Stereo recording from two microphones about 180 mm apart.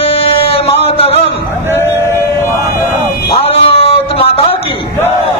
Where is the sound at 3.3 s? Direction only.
30° left (ahead or behind).